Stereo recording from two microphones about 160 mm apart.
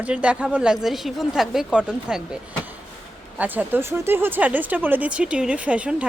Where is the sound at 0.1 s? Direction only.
5° right (ahead or behind).